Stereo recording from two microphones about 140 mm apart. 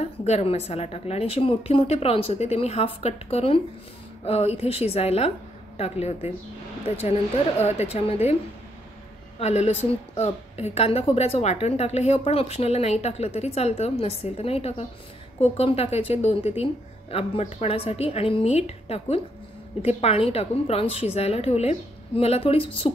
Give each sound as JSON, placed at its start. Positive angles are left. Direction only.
{"t": 0.0, "sound": "a woman's voice", "side_deg": 50}
{"t": 9.4, "sound": "a woman's voice", "side_deg": 50}